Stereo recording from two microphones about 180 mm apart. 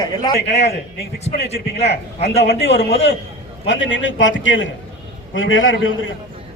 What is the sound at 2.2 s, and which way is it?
Speech, 35° left (ahead or behind).